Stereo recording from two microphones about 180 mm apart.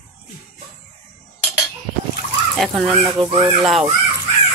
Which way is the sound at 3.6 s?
Centre (ahead or behind).